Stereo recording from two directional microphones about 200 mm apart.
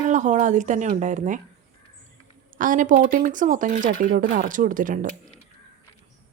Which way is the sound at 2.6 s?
40° right (ahead or behind).